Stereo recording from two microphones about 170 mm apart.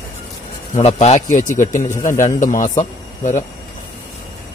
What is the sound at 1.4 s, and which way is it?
Speech, 15° left (ahead or behind).